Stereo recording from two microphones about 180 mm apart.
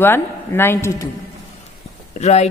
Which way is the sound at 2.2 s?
40° left (ahead or behind).